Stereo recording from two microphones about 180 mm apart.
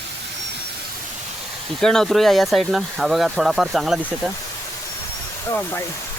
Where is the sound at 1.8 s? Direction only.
Centre (ahead or behind).